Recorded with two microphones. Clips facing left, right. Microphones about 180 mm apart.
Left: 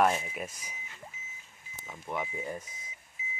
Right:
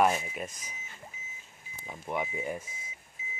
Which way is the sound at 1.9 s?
15° right (ahead or behind).